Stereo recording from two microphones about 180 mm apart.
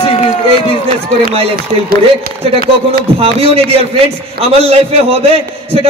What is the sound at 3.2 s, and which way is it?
A man's voice, 35° right (ahead or behind).